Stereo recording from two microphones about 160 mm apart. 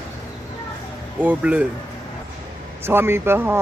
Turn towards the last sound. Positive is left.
turn(degrees=-15)  # may be behind; listen again after turning